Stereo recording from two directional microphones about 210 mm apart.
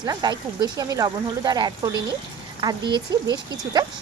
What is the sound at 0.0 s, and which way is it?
Speech, 20° right (ahead or behind).